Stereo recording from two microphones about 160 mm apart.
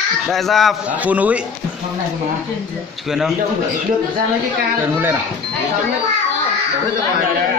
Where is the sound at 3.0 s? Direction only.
Centre (ahead or behind).